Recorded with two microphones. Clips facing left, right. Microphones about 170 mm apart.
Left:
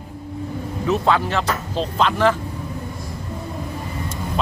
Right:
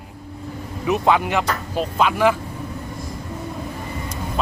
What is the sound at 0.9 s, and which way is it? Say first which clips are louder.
Speech: right 1 dB; 15° right (ahead or behind).